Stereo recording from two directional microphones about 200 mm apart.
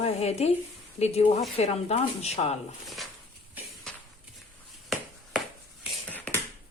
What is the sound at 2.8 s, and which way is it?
Speech, centre (ahead or behind).